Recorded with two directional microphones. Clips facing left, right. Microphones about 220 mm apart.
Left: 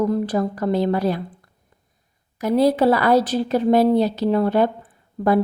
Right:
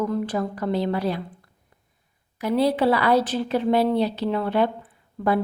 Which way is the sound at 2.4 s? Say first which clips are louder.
Left 4 dB; 45° left (ahead or behind).